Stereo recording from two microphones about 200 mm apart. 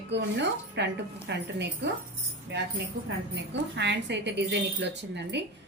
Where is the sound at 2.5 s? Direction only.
60° right (ahead or behind).